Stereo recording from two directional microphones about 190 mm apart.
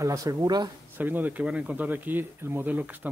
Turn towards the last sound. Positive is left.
turn(degrees=-10)  # may be behind; listen again after turning